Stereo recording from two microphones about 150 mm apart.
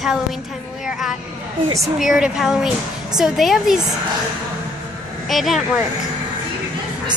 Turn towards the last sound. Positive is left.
turn(degrees=0)  # may be behind; listen again after turning